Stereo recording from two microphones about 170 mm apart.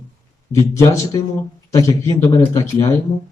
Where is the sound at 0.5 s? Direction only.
20° left (ahead or behind).